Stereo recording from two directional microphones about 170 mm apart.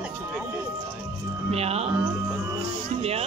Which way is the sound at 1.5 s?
35° right (ahead or behind).